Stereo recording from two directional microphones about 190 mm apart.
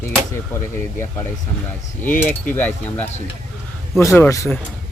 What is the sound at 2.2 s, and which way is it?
Speech, 10° left (ahead or behind).